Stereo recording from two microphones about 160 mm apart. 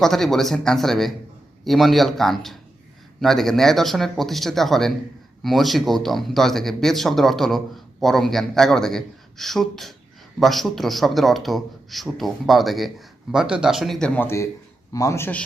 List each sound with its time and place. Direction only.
0.0 s a man's voice: centre (ahead or behind)
14.2 s a man's voice: 15° left (ahead or behind)